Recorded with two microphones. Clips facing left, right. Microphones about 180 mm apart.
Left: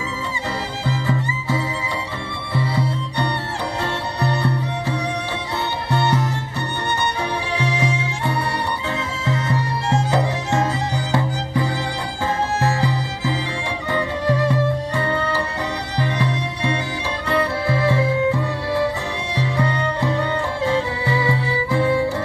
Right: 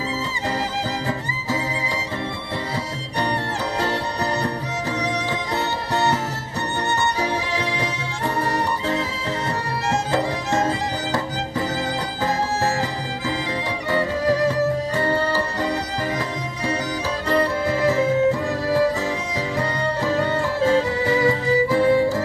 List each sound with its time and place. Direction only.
0.8 s music: 40° right (ahead or behind)
3.8 s music: 40° right (ahead or behind)
5.9 s music: 40° right (ahead or behind)
7.5 s music: 35° right (ahead or behind)
10.1 s music: 40° right (ahead or behind)
15.0 s music: 35° right (ahead or behind)